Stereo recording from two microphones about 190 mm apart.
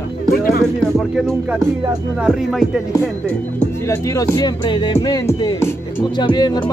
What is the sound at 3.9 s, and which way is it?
Music, 15° left (ahead or behind).